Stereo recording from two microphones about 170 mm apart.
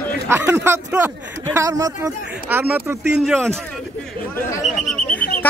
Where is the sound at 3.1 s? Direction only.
Centre (ahead or behind).